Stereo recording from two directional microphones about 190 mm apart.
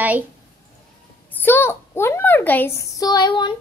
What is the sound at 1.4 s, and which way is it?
A child's voice, 10° left (ahead or behind).